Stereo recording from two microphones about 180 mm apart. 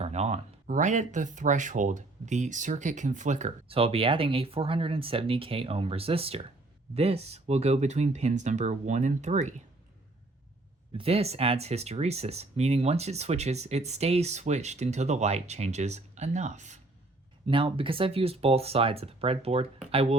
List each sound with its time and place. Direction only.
0.0 s speech: 35° right (ahead or behind)
10.9 s speech: 35° right (ahead or behind)
17.4 s speech: 30° right (ahead or behind)